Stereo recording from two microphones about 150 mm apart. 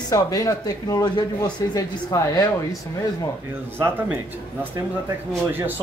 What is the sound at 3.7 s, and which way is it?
Speech, 15° right (ahead or behind).